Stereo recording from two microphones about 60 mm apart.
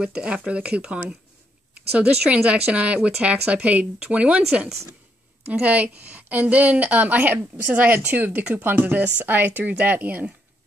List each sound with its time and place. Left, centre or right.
0.0 s a woman's voice: centre